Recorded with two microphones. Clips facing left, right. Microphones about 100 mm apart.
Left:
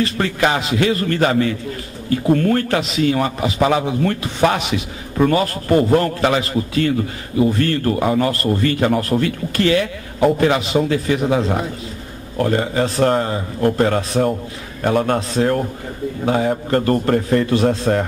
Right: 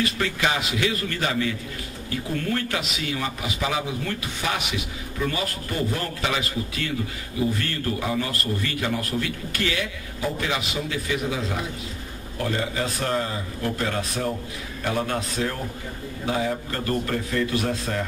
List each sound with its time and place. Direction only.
0.2 s a man's voice: 45° left (ahead or behind)